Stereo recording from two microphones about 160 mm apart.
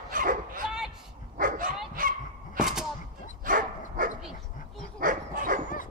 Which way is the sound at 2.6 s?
5° right (ahead or behind).